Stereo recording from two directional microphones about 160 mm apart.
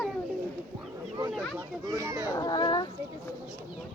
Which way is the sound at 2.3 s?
25° left (ahead or behind).